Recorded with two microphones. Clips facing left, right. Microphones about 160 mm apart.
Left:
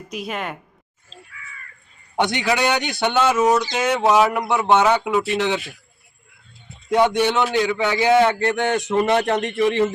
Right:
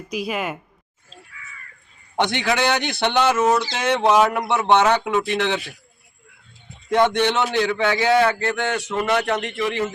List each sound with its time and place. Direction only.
0.1 s speech: 5° right (ahead or behind)
2.1 s speech: 10° left (ahead or behind)
6.9 s speech: 10° left (ahead or behind)
9.4 s a man's voice: 35° left (ahead or behind)